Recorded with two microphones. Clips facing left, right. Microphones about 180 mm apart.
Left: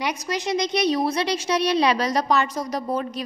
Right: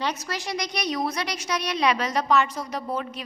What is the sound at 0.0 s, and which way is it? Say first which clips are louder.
A woman's voice: left 3 dB; 15° left (ahead or behind).